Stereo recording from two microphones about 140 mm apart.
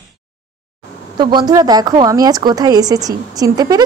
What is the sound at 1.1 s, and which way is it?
A woman's voice, 30° right (ahead or behind).